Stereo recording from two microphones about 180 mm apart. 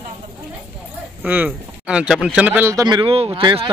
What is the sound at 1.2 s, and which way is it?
Speech, 10° right (ahead or behind).